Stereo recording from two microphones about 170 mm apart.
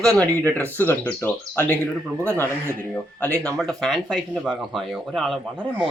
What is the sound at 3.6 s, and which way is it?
Speech, centre (ahead or behind).